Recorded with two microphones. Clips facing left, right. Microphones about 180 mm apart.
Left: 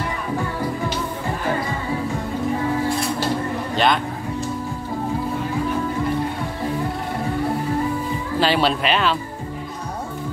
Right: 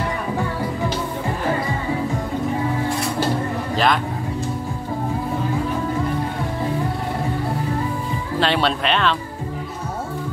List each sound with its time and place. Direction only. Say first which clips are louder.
3.7 s a man's voice: even; centre (ahead or behind)
8.4 s speech: left 1 dB; 5° left (ahead or behind)